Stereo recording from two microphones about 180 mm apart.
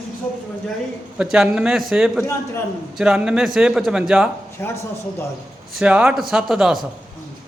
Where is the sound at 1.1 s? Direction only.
5° right (ahead or behind).